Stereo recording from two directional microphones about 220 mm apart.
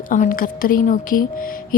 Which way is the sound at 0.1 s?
40° left (ahead or behind).